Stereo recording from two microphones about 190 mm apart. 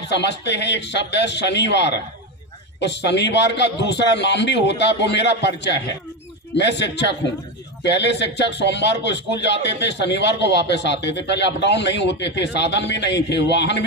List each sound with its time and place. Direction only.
0.1 s a man's voice: 65° left (ahead or behind)
6.5 s a man's voice: 65° left (ahead or behind)